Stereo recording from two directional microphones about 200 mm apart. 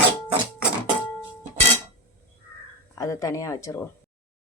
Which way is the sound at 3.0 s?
15° left (ahead or behind).